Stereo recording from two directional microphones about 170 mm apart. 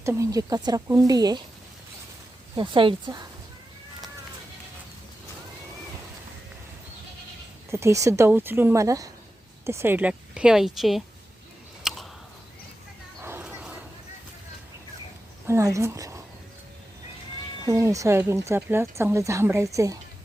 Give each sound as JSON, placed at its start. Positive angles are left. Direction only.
{"t": 0.0, "sound": "speech", "side_deg": -15}
{"t": 2.6, "sound": "speech", "side_deg": -30}
{"t": 7.7, "sound": "speech", "side_deg": -15}
{"t": 11.8, "sound": "a sound", "side_deg": 0}
{"t": 13.2, "sound": "a sound", "side_deg": -10}
{"t": 15.4, "sound": "a woman's voice", "side_deg": -15}
{"t": 17.7, "sound": "speech", "side_deg": -20}